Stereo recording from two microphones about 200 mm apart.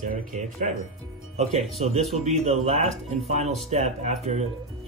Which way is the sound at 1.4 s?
35° right (ahead or behind).